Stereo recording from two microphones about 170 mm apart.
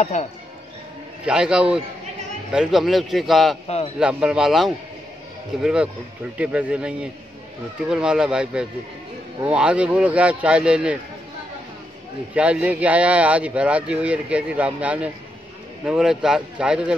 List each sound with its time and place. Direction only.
0.0 s speech: 45° left (ahead or behind)
1.2 s speech: 5° right (ahead or behind)
3.6 s speech: 35° left (ahead or behind)
4.0 s speech: 5° right (ahead or behind)
12.4 s speech: 5° right (ahead or behind)